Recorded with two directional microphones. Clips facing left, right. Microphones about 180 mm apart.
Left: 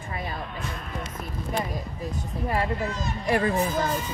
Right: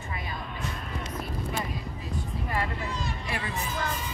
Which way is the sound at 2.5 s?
40° left (ahead or behind).